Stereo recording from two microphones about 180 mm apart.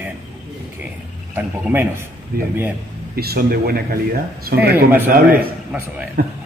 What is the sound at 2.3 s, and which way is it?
Speech, 60° right (ahead or behind).